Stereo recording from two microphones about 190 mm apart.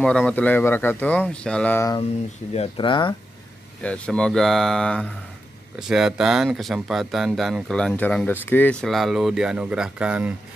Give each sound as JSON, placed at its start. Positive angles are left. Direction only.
{"t": 0.0, "sound": "speech", "side_deg": 5}
{"t": 2.5, "sound": "speech", "side_deg": 30}
{"t": 3.8, "sound": "speech", "side_deg": 5}